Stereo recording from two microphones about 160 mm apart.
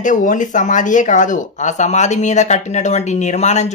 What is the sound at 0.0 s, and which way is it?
Speech, 55° left (ahead or behind).